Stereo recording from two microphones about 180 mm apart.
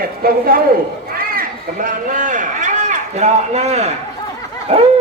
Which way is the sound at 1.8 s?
45° right (ahead or behind).